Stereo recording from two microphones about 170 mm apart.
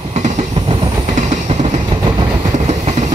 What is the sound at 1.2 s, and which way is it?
Train, 40° right (ahead or behind).